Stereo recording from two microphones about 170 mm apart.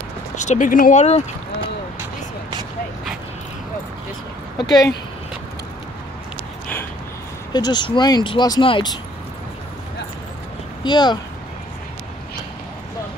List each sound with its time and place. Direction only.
0.4 s speech: 45° left (ahead or behind)
4.6 s speech: 25° left (ahead or behind)
7.5 s speech: 25° left (ahead or behind)
10.8 s speech: 25° left (ahead or behind)